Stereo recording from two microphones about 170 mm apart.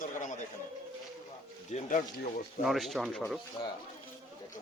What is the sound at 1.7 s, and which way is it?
Speech, 45° left (ahead or behind).